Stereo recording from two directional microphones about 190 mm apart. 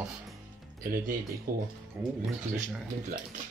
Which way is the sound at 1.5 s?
50° right (ahead or behind).